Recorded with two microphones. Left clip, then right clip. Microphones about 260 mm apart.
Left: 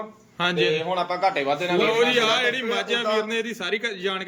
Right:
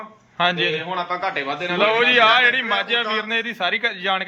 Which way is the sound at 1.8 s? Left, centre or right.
Centre.